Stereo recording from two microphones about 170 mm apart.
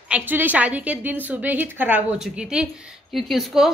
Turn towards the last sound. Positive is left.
turn(degrees=0)  # may be behind; listen again after turning